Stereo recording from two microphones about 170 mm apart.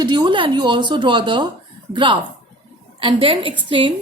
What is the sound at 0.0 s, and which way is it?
A woman's voice, 25° right (ahead or behind).